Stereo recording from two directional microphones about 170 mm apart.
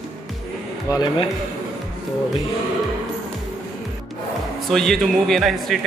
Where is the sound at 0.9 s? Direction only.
25° left (ahead or behind).